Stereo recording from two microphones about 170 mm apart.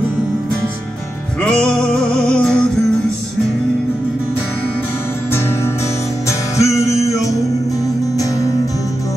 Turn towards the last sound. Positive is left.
turn(degrees=20)  # may be behind; listen again after turning